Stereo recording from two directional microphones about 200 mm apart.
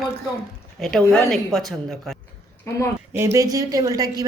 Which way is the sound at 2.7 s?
15° left (ahead or behind).